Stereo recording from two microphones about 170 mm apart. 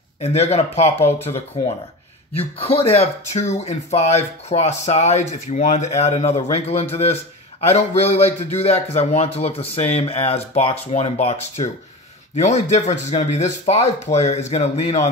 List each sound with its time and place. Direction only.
0.2 s speech: 40° left (ahead or behind)
2.5 s speech: 35° left (ahead or behind)